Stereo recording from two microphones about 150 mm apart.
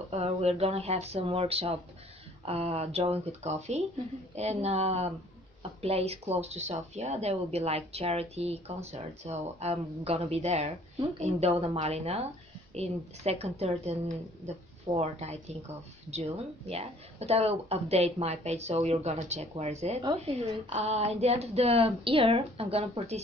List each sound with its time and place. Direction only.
0.1 s speech: 45° right (ahead or behind)
15.0 s speech: 45° right (ahead or behind)